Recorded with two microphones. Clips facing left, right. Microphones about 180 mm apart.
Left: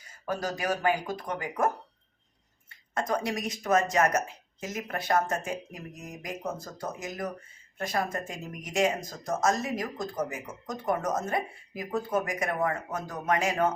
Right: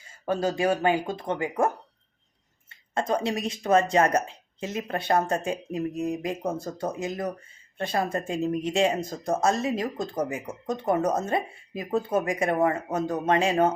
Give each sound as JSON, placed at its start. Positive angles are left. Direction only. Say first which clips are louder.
{"t": 0.3, "sound": "speech", "louder": "right 6 dB", "side_deg": -25}